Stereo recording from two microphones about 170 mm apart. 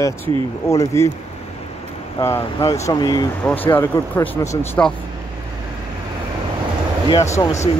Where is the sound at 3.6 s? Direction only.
10° left (ahead or behind).